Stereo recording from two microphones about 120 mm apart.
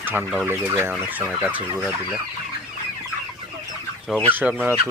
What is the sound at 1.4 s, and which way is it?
Fowl, 15° right (ahead or behind).